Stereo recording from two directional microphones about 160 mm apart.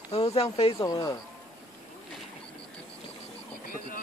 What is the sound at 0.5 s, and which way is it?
Speech, 25° left (ahead or behind).